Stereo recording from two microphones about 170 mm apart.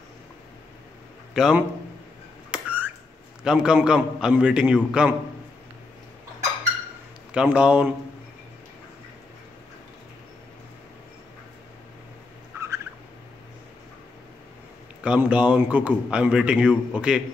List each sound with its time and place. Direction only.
1.3 s a man's voice: centre (ahead or behind)
2.5 s a sound: 10° right (ahead or behind)
3.4 s a man's voice: 5° right (ahead or behind)
7.3 s a man's voice: 5° right (ahead or behind)
12.5 s a sound: 15° right (ahead or behind)
15.0 s a man's voice: 5° right (ahead or behind)